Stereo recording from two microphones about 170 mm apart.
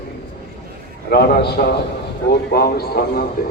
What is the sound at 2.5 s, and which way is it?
Speech, 65° left (ahead or behind).